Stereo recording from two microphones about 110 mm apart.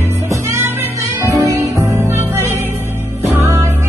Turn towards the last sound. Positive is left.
turn(degrees=-20)  # may be behind; listen again after turning